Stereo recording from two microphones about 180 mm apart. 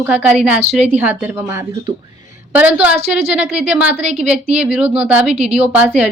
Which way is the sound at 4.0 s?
35° right (ahead or behind).